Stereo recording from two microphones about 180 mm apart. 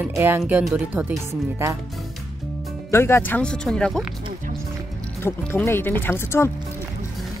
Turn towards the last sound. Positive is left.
turn(degrees=10)  # may be behind; listen again after turning